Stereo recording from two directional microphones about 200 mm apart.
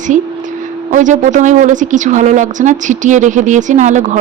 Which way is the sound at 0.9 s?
35° right (ahead or behind).